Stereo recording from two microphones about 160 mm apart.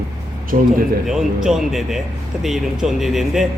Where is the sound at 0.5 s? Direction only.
55° right (ahead or behind).